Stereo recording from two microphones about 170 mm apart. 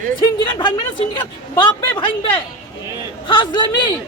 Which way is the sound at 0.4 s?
25° left (ahead or behind).